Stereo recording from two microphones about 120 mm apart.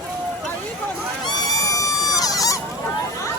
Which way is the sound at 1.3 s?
30° left (ahead or behind).